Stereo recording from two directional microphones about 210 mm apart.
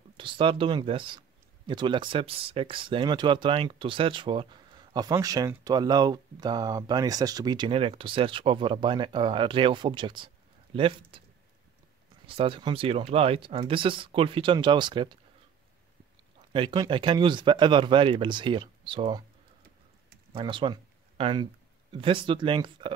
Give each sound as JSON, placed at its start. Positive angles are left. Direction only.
{"t": 0.2, "sound": "speech", "side_deg": -25}
{"t": 12.3, "sound": "speech", "side_deg": -25}
{"t": 16.5, "sound": "speech", "side_deg": -25}
{"t": 20.3, "sound": "speech", "side_deg": -25}